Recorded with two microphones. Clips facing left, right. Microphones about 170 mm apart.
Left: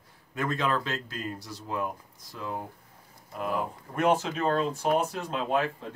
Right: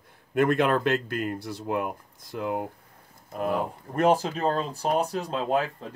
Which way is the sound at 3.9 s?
35° right (ahead or behind).